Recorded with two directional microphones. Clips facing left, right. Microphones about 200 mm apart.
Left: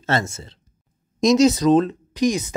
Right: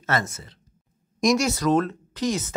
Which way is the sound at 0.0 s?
25° left (ahead or behind).